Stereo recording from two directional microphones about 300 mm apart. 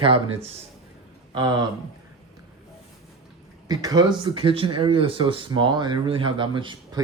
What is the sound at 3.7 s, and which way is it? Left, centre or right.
Speech, centre.